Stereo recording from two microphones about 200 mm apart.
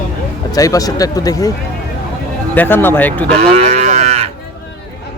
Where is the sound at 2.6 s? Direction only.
10° left (ahead or behind).